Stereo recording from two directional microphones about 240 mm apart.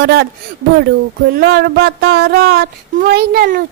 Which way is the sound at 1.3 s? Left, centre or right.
Right.